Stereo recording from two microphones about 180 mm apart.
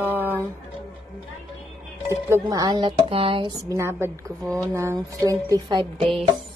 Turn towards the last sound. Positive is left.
turn(degrees=0)  # may be behind; listen again after turning